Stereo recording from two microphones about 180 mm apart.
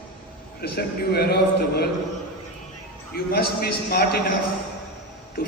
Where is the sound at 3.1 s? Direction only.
60° left (ahead or behind).